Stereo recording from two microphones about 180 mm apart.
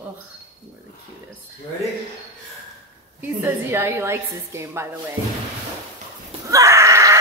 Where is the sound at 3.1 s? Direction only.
10° right (ahead or behind).